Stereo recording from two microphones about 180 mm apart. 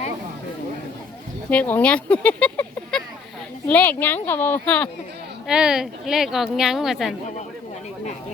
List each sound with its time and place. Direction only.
1.5 s speech: 10° left (ahead or behind)
5.5 s speech: 5° right (ahead or behind)